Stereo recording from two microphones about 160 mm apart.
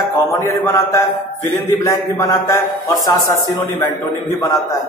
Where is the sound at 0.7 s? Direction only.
15° left (ahead or behind).